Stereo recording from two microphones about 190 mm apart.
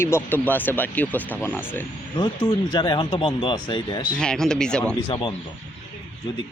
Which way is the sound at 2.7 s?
25° left (ahead or behind).